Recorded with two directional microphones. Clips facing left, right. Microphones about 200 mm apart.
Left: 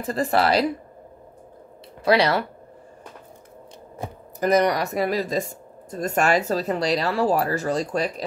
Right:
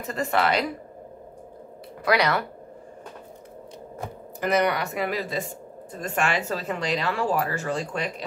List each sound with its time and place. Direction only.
0.0 s speech: 35° left (ahead or behind)
2.0 s speech: 30° left (ahead or behind)
4.4 s speech: 40° left (ahead or behind)